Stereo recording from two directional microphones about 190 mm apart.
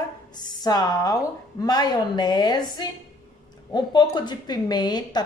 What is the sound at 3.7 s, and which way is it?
A woman's voice, 25° left (ahead or behind).